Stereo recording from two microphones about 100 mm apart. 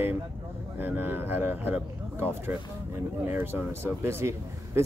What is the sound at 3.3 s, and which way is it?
Speech, 25° right (ahead or behind).